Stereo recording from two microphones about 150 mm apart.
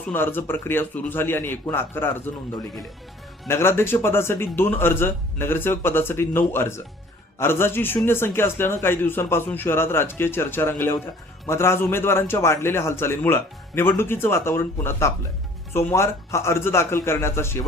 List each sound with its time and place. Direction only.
0.1 s a man's voice: 15° left (ahead or behind)
3.4 s a man's voice: 15° left (ahead or behind)